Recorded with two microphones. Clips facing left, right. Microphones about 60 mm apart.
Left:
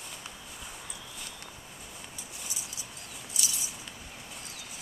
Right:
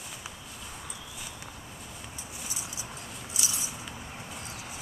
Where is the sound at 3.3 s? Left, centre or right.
Right.